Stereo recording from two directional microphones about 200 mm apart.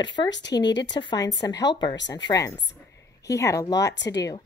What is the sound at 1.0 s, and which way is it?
A woman's voice, 20° left (ahead or behind).